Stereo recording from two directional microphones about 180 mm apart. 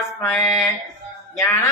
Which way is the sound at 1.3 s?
15° left (ahead or behind).